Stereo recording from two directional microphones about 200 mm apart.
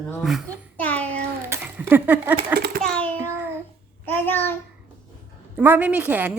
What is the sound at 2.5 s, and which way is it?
Speech, 50° right (ahead or behind).